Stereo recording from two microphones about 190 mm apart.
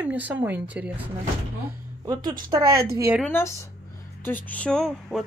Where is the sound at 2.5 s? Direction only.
15° right (ahead or behind).